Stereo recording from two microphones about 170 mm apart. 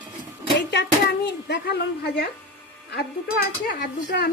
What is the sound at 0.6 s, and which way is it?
Speech, 90° left.